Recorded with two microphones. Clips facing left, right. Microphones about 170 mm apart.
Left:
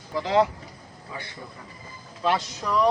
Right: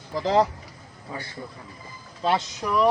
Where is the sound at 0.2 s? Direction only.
35° right (ahead or behind).